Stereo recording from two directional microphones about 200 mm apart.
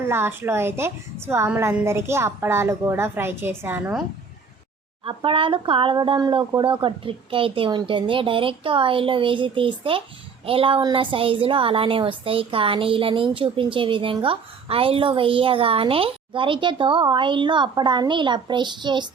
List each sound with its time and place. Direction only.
0.0 s a woman's voice: 10° right (ahead or behind)
5.0 s a woman's voice: 25° right (ahead or behind)